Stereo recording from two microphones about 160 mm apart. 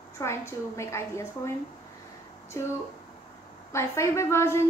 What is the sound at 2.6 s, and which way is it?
Speech, 20° left (ahead or behind).